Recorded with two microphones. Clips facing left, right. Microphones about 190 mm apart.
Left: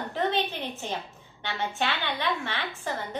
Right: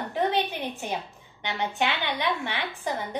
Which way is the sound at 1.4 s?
15° right (ahead or behind).